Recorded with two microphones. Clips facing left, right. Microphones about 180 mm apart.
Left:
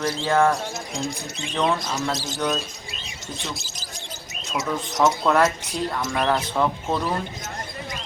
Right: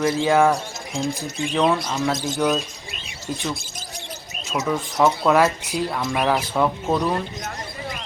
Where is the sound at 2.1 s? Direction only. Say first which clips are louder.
Right 4 dB; 50° right (ahead or behind).